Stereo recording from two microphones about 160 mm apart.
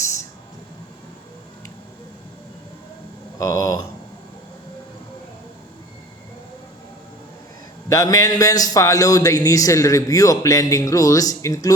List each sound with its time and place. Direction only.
3.3 s a man's voice: 20° left (ahead or behind)
7.9 s a man's voice: 20° left (ahead or behind)